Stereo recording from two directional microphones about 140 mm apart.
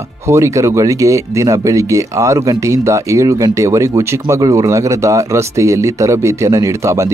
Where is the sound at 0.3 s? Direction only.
20° right (ahead or behind).